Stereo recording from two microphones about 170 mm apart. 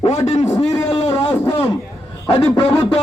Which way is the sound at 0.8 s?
35° left (ahead or behind).